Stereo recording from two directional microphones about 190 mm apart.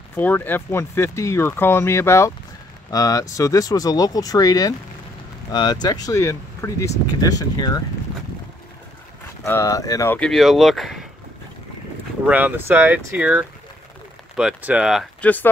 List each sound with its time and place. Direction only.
0.1 s speech: 10° left (ahead or behind)
9.4 s speech: 15° left (ahead or behind)
12.3 s speech: 10° right (ahead or behind)